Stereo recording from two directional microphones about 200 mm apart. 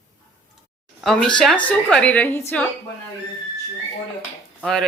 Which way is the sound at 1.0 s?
Centre (ahead or behind).